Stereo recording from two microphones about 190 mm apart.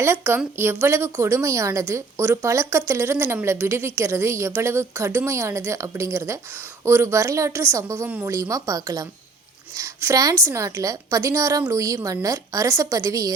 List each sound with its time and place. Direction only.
0.0 s a woman's voice: 10° right (ahead or behind)